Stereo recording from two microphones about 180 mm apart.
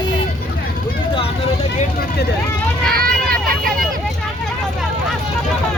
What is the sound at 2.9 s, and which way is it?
Vehicle, 55° right (ahead or behind).